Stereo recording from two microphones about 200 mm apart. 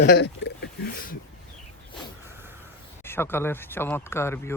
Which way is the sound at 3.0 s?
10° left (ahead or behind).